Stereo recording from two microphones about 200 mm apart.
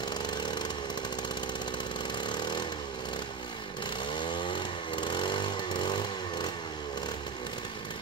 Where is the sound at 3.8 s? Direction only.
25° left (ahead or behind).